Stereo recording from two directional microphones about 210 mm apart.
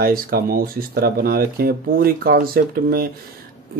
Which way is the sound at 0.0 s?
45° right (ahead or behind).